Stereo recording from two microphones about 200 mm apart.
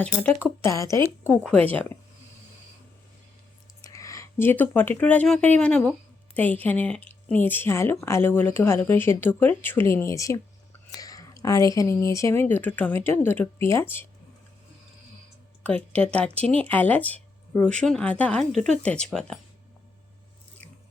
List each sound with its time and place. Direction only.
0.0 s speech: 5° left (ahead or behind)
3.8 s speech: 15° left (ahead or behind)
16.0 s speech: 5° left (ahead or behind)